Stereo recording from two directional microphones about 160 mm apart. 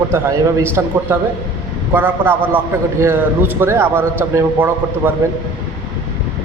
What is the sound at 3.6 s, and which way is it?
A man's voice, 15° right (ahead or behind).